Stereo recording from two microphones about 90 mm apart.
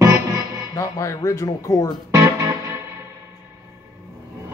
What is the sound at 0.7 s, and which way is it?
Speech, 35° left (ahead or behind).